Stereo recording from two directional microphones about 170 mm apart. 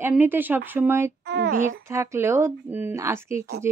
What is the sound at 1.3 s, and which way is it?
Speech, 70° right (ahead or behind).